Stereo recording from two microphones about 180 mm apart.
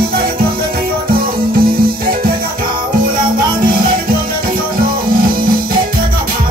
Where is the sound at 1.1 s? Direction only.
55° right (ahead or behind).